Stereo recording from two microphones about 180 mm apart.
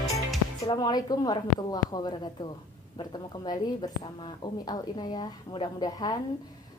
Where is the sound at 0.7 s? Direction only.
20° left (ahead or behind).